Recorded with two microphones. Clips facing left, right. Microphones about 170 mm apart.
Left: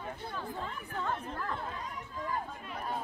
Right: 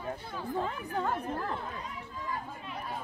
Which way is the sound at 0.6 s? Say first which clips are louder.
Right 6 dB; 40° right (ahead or behind).